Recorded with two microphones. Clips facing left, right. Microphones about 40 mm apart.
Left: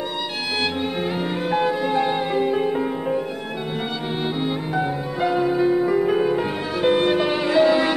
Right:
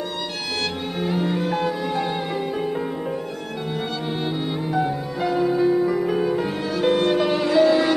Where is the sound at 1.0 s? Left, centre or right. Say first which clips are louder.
Right 1 dB; centre.